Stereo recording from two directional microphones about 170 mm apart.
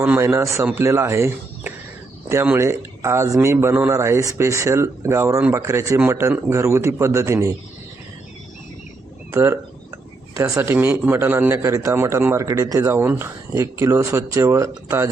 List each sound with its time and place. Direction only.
0.0 s speech: 15° right (ahead or behind)
9.3 s speech: 15° right (ahead or behind)